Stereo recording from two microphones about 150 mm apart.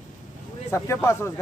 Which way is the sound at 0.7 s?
20° left (ahead or behind).